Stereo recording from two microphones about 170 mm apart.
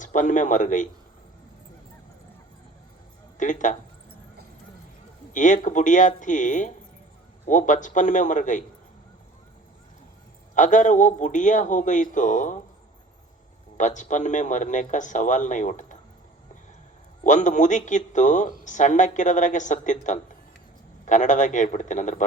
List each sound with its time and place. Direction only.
0.0 s a man's voice: 50° left (ahead or behind)
3.3 s speech: 45° left (ahead or behind)
5.3 s a man's voice: 45° left (ahead or behind)
10.5 s a man's voice: 45° left (ahead or behind)
13.7 s a man's voice: 45° left (ahead or behind)
17.2 s a man's voice: 45° left (ahead or behind)